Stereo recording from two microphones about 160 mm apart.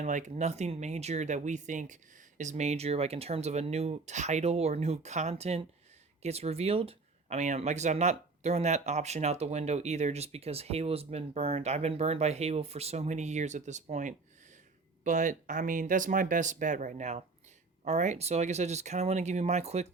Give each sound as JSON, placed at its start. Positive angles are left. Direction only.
{"t": 0.0, "sound": "speech", "side_deg": -50}